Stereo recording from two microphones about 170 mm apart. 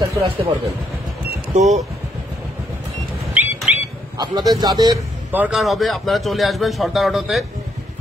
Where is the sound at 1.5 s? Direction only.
40° right (ahead or behind).